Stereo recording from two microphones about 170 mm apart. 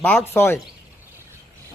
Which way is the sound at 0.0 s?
5° left (ahead or behind).